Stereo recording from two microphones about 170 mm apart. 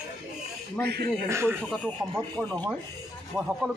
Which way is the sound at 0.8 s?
70° right (ahead or behind).